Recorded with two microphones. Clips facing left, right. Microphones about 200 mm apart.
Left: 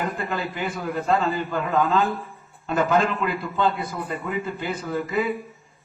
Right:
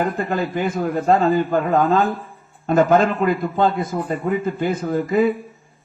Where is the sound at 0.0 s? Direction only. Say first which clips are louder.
Right 6 dB; 45° right (ahead or behind).